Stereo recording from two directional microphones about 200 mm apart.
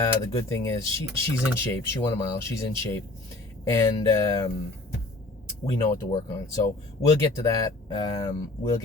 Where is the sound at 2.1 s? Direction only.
15° left (ahead or behind).